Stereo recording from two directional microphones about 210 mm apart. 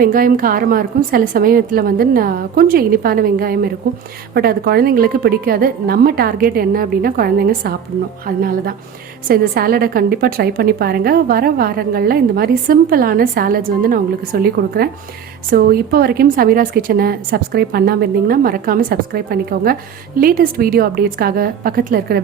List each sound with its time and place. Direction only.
0.0 s a woman's voice: 40° right (ahead or behind)